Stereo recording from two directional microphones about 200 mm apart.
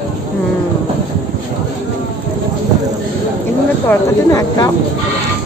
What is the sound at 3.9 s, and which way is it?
Speech, 20° left (ahead or behind).